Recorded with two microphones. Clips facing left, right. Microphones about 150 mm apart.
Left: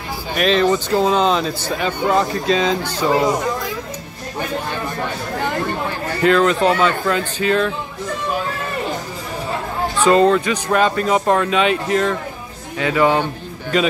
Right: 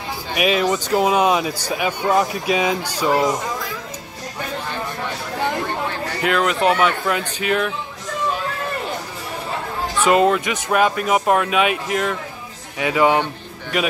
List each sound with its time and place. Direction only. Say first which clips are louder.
0.4 s speech: left 3 dB; 10° right (ahead or behind)
6.2 s speech: left 4 dB; 10° right (ahead or behind)
10.0 s a man's voice: left 3 dB; 10° right (ahead or behind)